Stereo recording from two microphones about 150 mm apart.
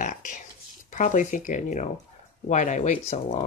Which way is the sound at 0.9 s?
60° left (ahead or behind).